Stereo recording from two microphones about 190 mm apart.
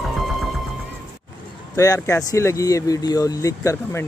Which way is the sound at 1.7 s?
15° left (ahead or behind).